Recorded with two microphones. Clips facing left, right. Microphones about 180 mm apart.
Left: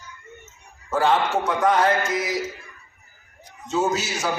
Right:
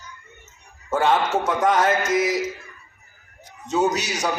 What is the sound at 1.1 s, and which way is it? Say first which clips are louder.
A man's voice: right 1 dB; centre (ahead or behind).